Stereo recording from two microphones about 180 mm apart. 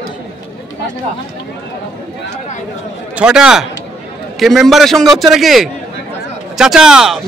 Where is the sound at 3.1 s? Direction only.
5° right (ahead or behind).